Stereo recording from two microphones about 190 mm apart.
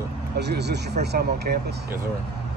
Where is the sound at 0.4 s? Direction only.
60° right (ahead or behind).